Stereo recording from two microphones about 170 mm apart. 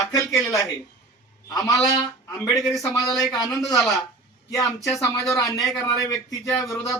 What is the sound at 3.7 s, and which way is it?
Speech, centre (ahead or behind).